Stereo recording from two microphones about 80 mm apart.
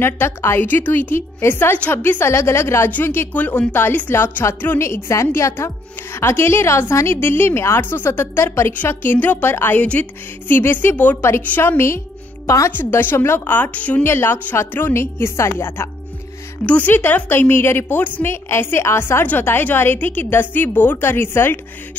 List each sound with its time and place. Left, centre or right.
0.0 s a woman's voice: left
4.7 s a woman's voice: left
9.8 s a woman's voice: centre; by 12.7 s left
12.7 s a woman's voice: left
14.0 s a woman's voice: left
16.6 s a woman's voice: left